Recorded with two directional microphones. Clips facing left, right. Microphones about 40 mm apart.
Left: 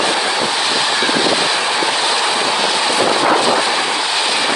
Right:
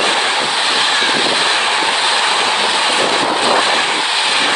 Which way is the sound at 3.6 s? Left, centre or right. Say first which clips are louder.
Right 2 dB; right.